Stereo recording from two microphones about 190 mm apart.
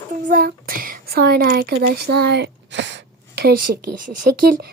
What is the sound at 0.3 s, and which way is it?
Speech, 50° right (ahead or behind).